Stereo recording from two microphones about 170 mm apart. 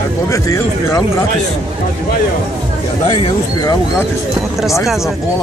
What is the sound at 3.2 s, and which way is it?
Speech, 25° left (ahead or behind).